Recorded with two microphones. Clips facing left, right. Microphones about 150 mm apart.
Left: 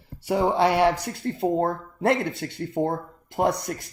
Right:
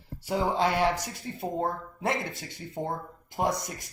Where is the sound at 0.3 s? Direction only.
70° left (ahead or behind).